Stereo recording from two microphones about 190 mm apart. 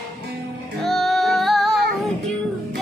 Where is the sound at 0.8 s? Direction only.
Centre (ahead or behind).